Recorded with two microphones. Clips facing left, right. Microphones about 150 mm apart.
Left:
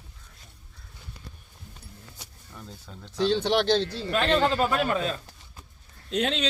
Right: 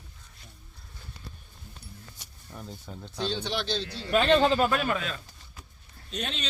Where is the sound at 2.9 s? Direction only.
10° right (ahead or behind).